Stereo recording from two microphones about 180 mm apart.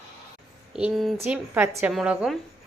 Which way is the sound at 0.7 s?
5° right (ahead or behind).